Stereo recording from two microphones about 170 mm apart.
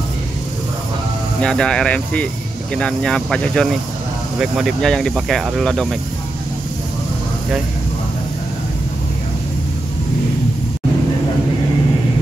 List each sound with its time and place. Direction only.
1.4 s speech: 5° left (ahead or behind)